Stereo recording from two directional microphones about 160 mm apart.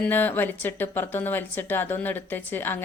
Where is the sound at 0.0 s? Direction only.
10° left (ahead or behind).